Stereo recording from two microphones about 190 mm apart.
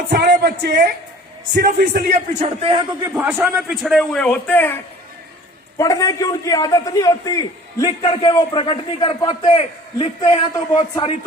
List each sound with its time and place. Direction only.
0.1 s a woman's voice: 60° right (ahead or behind)
1.5 s a man's voice: 65° right (ahead or behind)
2.0 s a man's voice: 35° right (ahead or behind)
3.0 s a man's voice: 10° right (ahead or behind); by 11.2 s 25° left (ahead or behind)